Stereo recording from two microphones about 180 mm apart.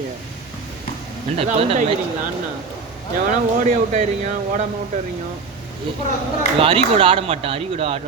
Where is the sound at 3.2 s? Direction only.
45° right (ahead or behind).